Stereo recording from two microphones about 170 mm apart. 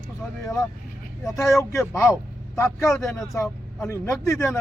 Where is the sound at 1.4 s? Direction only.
15° left (ahead or behind).